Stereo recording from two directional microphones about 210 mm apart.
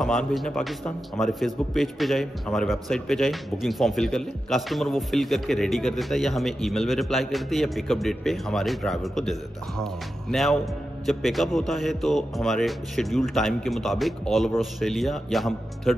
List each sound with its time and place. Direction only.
0.0 s a man's voice: centre (ahead or behind)